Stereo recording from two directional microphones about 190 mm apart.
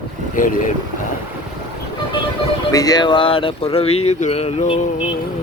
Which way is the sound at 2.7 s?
20° left (ahead or behind).